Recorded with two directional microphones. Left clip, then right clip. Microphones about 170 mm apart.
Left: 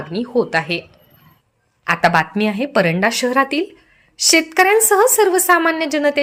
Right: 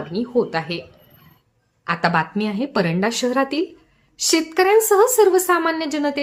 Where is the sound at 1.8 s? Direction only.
20° left (ahead or behind).